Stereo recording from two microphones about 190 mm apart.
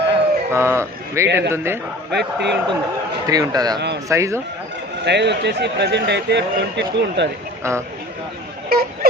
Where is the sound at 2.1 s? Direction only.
60° right (ahead or behind).